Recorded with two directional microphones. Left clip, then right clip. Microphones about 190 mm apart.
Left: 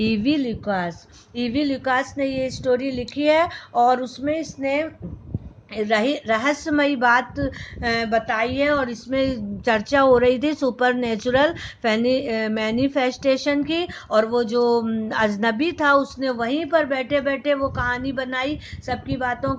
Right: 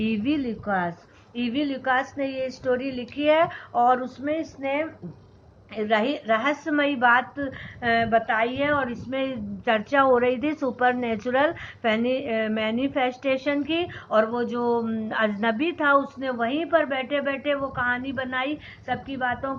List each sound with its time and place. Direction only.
0.0 s a woman's voice: 50° left (ahead or behind)